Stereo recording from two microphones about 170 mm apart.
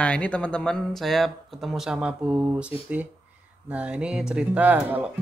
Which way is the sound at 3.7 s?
5° right (ahead or behind).